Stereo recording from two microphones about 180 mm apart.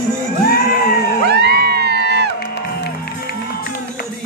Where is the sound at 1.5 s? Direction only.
60° right (ahead or behind).